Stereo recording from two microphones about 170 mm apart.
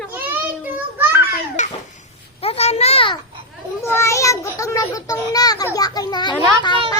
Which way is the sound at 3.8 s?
15° left (ahead or behind).